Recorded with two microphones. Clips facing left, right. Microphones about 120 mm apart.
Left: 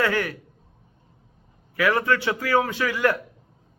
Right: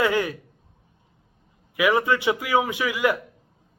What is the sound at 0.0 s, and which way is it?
Speech, 15° right (ahead or behind).